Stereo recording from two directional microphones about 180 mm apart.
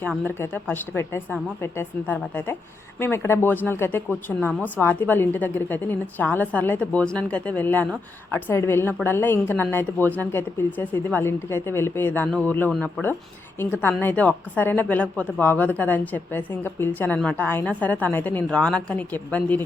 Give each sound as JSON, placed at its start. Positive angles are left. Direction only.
{"t": 0.3, "sound": "speech", "side_deg": 15}